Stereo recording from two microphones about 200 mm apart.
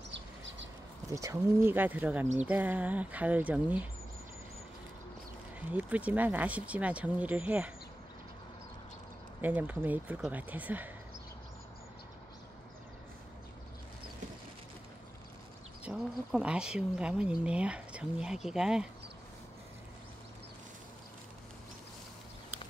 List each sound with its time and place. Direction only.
0.1 s a sound: 65° right (ahead or behind)
1.1 s speech: 15° right (ahead or behind)
5.7 s speech: 5° right (ahead or behind)
9.4 s speech: 10° right (ahead or behind)
15.8 s speech: centre (ahead or behind)